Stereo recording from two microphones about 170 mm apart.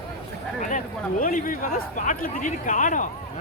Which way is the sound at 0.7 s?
50° left (ahead or behind).